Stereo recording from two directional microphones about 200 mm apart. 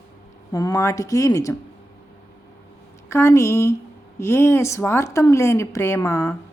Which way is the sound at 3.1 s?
15° left (ahead or behind).